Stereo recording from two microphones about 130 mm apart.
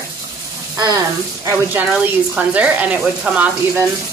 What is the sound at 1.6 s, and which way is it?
Speech, 10° right (ahead or behind).